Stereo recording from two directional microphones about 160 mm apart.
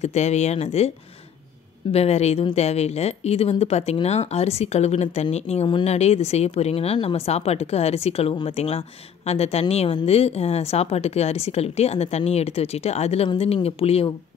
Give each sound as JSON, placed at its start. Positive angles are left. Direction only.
{"t": 0.0, "sound": "speech", "side_deg": 45}